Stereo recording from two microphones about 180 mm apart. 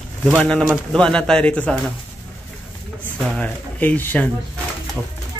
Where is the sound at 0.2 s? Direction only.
5° left (ahead or behind).